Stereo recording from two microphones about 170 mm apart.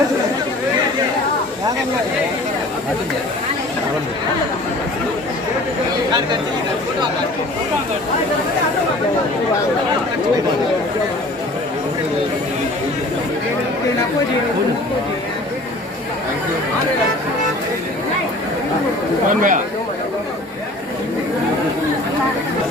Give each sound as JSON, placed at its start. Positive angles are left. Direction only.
{"t": 19.3, "sound": "speech", "side_deg": -50}